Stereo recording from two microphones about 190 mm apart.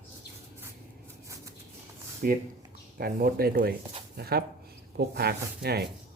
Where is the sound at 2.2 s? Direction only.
45° right (ahead or behind).